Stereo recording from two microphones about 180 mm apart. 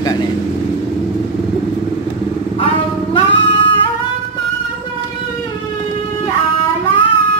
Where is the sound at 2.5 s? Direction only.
30° left (ahead or behind).